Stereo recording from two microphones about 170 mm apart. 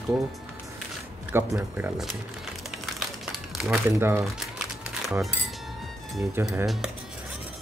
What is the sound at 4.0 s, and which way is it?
Speech, 15° right (ahead or behind).